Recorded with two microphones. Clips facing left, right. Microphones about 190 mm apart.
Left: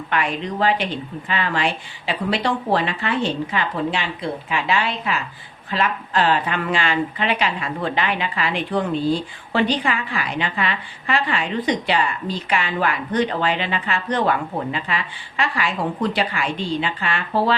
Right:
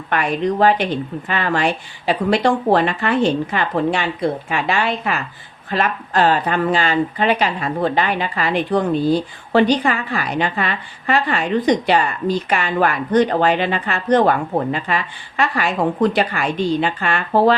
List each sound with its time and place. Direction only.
0.1 s a woman's voice: 45° right (ahead or behind)